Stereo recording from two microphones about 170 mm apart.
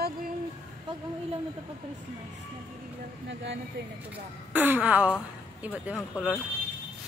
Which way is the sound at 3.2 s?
90° right.